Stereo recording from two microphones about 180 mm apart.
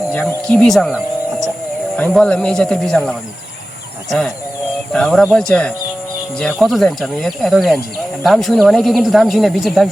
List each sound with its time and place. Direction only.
0.1 s speech: 10° left (ahead or behind)
4.9 s speech: 5° left (ahead or behind)